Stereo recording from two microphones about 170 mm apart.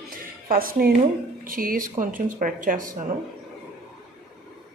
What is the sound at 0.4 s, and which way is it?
Speech, 60° right (ahead or behind).